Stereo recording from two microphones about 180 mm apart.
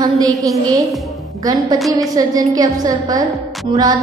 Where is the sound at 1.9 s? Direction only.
20° right (ahead or behind).